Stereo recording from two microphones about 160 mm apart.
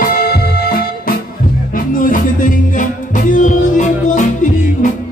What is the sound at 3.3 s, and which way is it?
Music, 50° left (ahead or behind).